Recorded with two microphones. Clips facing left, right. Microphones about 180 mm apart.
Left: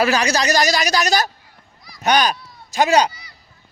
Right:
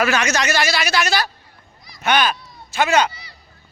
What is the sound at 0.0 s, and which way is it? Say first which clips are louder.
A man's voice: left 2 dB; 35° left (ahead or behind).